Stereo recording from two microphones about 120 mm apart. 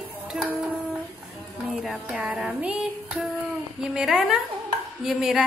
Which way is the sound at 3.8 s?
5° right (ahead or behind).